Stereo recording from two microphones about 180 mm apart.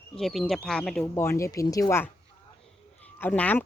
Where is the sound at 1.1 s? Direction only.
15° left (ahead or behind).